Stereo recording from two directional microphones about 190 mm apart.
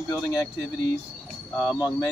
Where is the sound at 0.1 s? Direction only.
15° left (ahead or behind).